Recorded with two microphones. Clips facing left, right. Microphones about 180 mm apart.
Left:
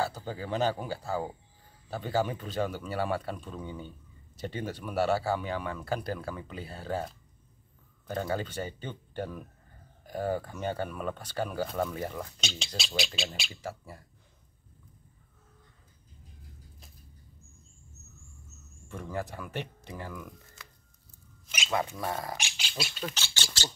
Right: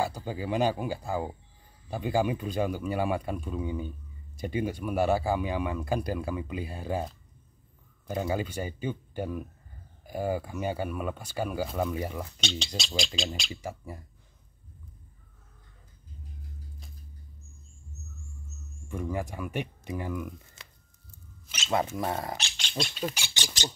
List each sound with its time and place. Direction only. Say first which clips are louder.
0.0 s speech: right 2 dB; 10° right (ahead or behind)
8.1 s speech: right 2 dB; 10° right (ahead or behind)
12.4 s speech: right 4 dB; centre (ahead or behind)
13.5 s speech: right 2 dB; 15° right (ahead or behind)
18.9 s speech: right 3 dB; 10° right (ahead or behind)
21.6 s speech: right 3 dB; 20° right (ahead or behind)
22.4 s speech: right 3 dB; 5° left (ahead or behind)
23.1 s speech: right 1 dB; 15° right (ahead or behind)